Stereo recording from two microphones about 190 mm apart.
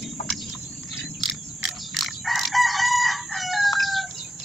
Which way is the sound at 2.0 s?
Centre (ahead or behind).